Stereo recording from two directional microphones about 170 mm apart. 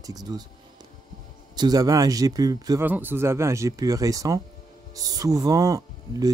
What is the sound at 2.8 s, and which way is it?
Speech, 10° right (ahead or behind).